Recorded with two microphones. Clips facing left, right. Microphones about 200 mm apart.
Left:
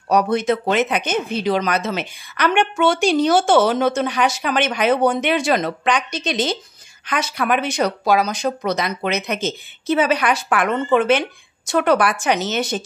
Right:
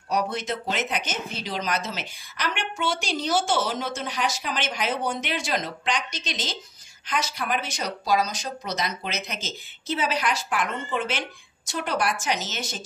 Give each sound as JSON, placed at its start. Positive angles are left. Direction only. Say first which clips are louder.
{"t": 0.1, "sound": "speech", "louder": "left 9 dB", "side_deg": 65}